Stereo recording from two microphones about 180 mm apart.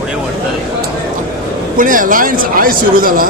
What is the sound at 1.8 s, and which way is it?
Speech, 50° right (ahead or behind).